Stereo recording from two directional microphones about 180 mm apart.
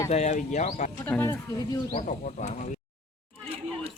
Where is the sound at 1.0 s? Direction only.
10° left (ahead or behind).